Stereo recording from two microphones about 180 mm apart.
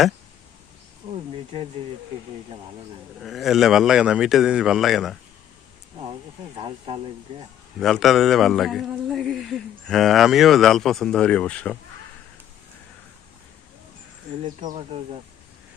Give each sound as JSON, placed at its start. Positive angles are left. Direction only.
{"t": 3.2, "sound": "a man's voice", "side_deg": 0}
{"t": 6.6, "sound": "speech", "side_deg": -25}
{"t": 7.8, "sound": "a man's voice", "side_deg": 0}
{"t": 14.6, "sound": "speech", "side_deg": -45}